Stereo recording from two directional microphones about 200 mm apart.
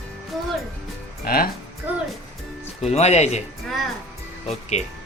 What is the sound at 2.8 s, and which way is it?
Speech, 35° left (ahead or behind).